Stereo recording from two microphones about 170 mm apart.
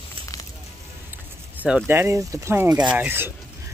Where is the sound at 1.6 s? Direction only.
5° right (ahead or behind).